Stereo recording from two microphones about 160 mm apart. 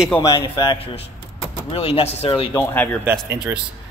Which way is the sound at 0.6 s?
35° left (ahead or behind).